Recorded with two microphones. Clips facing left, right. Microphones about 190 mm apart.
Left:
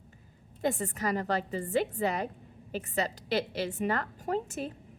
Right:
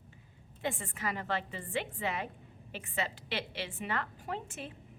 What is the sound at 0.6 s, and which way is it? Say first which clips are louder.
A woman's voice: left 6 dB; 40° left (ahead or behind).